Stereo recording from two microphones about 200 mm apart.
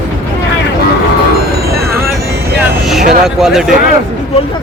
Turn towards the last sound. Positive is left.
turn(degrees=0)  # may be behind; listen again after turning